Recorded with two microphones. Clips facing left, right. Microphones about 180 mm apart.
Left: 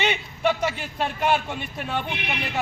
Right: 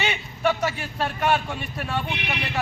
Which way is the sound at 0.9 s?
25° left (ahead or behind).